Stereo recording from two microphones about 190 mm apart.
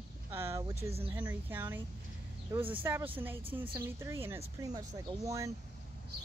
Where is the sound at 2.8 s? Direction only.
10° right (ahead or behind).